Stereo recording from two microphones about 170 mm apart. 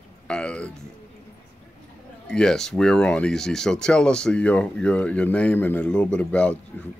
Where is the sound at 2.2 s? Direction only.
5° left (ahead or behind).